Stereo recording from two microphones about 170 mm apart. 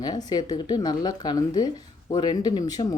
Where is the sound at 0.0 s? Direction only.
25° left (ahead or behind).